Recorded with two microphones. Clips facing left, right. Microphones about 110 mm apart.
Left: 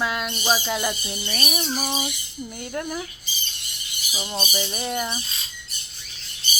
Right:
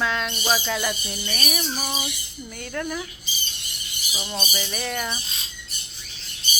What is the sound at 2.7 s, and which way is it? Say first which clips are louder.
Speech: right 1 dB; 25° left (ahead or behind).